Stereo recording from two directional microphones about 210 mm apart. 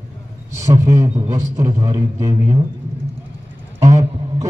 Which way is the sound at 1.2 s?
15° right (ahead or behind).